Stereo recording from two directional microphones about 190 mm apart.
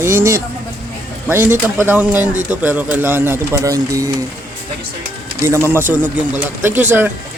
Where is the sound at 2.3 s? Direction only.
40° right (ahead or behind).